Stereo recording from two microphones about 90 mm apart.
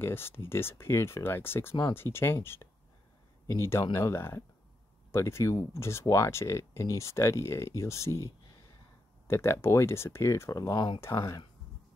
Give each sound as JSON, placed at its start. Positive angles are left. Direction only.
{"t": 0.0, "sound": "speech", "side_deg": 25}
{"t": 9.3, "sound": "speech", "side_deg": 30}
{"t": 11.0, "sound": "speech", "side_deg": 30}